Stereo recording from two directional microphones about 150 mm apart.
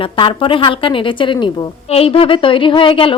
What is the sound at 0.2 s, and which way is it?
Speech, 35° left (ahead or behind).